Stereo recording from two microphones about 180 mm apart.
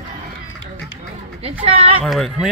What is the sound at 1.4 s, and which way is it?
Speech, 30° right (ahead or behind).